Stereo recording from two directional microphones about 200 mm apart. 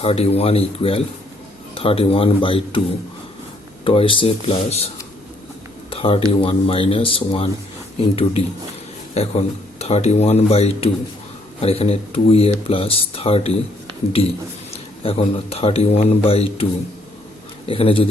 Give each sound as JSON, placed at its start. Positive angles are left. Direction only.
{"t": 0.0, "sound": "speech", "side_deg": 30}
{"t": 3.8, "sound": "speech", "side_deg": 25}
{"t": 5.9, "sound": "speech", "side_deg": 30}
{"t": 15.0, "sound": "speech", "side_deg": 30}
{"t": 17.7, "sound": "speech", "side_deg": 25}